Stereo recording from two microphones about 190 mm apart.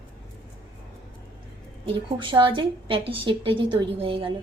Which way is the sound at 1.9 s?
25° right (ahead or behind).